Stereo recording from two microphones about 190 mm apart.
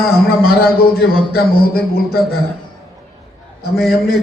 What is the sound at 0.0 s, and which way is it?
A man's voice, 55° left (ahead or behind).